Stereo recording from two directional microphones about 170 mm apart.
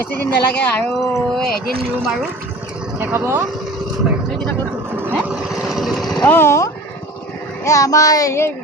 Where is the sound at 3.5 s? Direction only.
Centre (ahead or behind).